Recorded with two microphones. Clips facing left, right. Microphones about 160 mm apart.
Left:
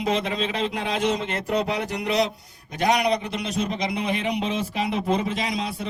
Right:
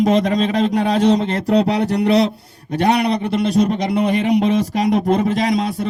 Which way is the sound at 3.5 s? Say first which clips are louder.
Right 8 dB; 45° right (ahead or behind).